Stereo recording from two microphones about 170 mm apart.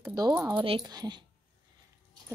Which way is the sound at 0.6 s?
30° right (ahead or behind).